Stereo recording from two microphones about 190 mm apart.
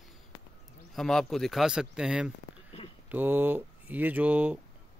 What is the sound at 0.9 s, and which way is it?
Speech, centre (ahead or behind).